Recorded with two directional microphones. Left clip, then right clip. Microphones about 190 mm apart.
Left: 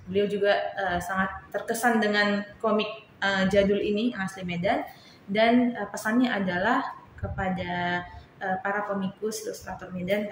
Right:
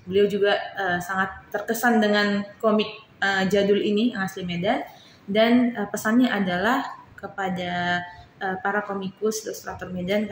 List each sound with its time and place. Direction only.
0.1 s a woman's voice: 60° right (ahead or behind)